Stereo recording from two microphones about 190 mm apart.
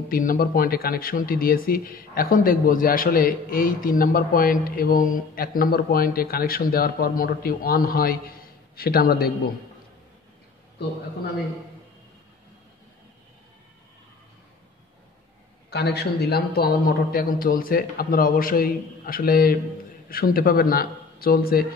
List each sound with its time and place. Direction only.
0.1 s speech: 45° left (ahead or behind)
15.7 s speech: 60° left (ahead or behind)